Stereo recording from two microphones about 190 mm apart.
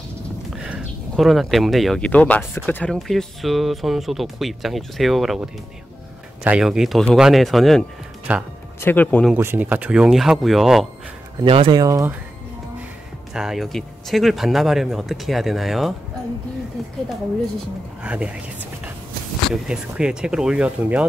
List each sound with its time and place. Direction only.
0.7 s speech: centre (ahead or behind)
8.8 s speech: 10° left (ahead or behind)
9.3 s speech: 10° right (ahead or behind)
11.4 s speech: 30° right (ahead or behind)
13.3 s speech: 5° right (ahead or behind)
18.0 s speech: 5° right (ahead or behind)
19.5 s speech: 5° right (ahead or behind)